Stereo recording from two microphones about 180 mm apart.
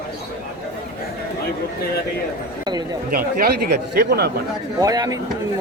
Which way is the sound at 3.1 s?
60° right (ahead or behind).